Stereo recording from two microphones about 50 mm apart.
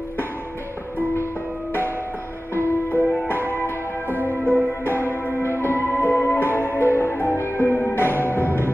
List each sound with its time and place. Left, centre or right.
2.5 s music: left
5.2 s music: left